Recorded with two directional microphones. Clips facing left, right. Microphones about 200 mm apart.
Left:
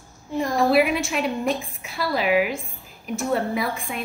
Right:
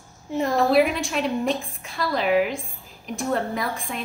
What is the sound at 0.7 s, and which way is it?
A woman's voice, 5° left (ahead or behind).